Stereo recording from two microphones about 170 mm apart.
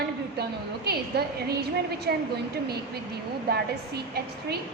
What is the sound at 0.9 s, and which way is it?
A woman's voice, 70° right (ahead or behind).